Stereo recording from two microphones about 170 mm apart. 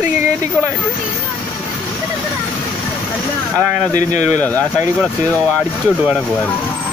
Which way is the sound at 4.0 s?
45° left (ahead or behind).